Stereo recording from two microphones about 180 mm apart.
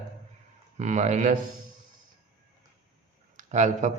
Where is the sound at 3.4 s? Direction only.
40° right (ahead or behind).